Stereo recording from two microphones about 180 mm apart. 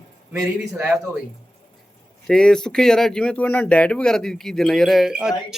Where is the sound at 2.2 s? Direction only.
5° left (ahead or behind).